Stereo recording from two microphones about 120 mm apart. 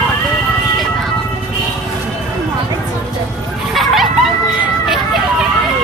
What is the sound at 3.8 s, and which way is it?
Dog, centre (ahead or behind).